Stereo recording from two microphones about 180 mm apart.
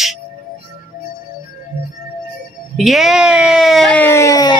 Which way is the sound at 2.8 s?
Centre (ahead or behind).